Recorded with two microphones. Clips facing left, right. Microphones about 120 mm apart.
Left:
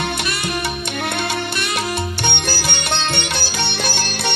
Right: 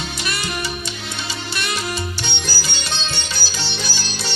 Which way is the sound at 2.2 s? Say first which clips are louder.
Left 6 dB; 60° left (ahead or behind).